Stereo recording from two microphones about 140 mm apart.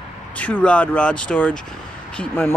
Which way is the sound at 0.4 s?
10° left (ahead or behind).